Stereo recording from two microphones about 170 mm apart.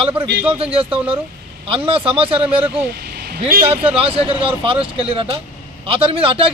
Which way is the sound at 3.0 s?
70° right (ahead or behind).